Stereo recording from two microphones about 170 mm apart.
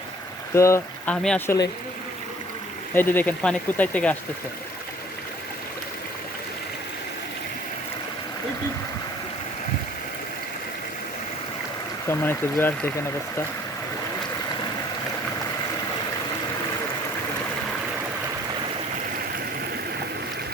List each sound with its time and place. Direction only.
0.5 s speech: 15° left (ahead or behind)
1.1 s speech: 5° left (ahead or behind)
1.5 s speech: 25° left (ahead or behind)
2.9 s speech: 10° left (ahead or behind)
12.0 s speech: 15° left (ahead or behind)